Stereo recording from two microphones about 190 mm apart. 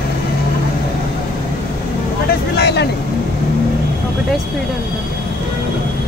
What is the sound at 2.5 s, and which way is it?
Vehicle, 60° left (ahead or behind).